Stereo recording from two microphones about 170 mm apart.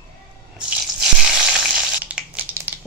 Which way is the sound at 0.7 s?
5° right (ahead or behind).